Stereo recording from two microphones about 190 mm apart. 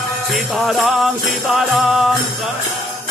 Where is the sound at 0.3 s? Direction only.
Centre (ahead or behind).